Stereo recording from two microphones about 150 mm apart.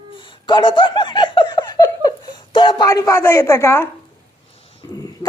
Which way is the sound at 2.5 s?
35° left (ahead or behind).